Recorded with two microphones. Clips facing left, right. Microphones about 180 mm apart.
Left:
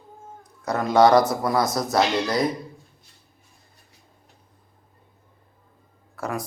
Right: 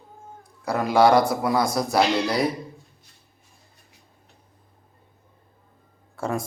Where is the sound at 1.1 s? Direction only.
30° right (ahead or behind).